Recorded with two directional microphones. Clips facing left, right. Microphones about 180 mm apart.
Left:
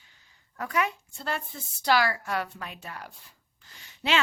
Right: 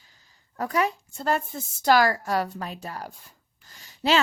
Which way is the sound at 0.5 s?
35° right (ahead or behind).